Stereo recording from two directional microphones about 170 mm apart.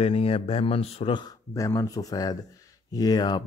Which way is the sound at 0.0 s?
35° left (ahead or behind).